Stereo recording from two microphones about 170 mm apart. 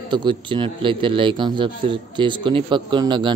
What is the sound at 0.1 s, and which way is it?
A man's voice, 30° right (ahead or behind).